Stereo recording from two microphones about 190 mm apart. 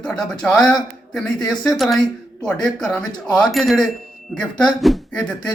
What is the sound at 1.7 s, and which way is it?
Speech, centre (ahead or behind).